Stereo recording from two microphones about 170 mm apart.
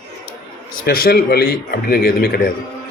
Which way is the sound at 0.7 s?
60° left (ahead or behind).